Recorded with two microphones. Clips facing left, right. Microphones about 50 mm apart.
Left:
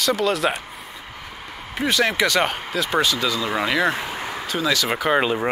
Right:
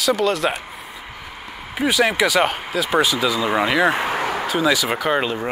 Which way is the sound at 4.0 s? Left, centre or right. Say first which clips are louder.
Right 7 dB; right.